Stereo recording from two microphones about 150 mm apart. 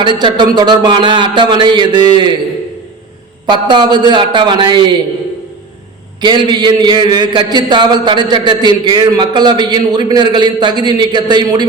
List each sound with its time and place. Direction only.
0.2 s speech: 30° right (ahead or behind)
3.4 s a man's voice: 30° right (ahead or behind)
6.2 s a man's voice: 30° right (ahead or behind)